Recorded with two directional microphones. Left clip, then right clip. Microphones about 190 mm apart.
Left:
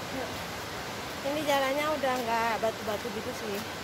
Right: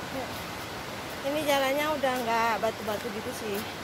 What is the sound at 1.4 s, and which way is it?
Speech, 15° right (ahead or behind).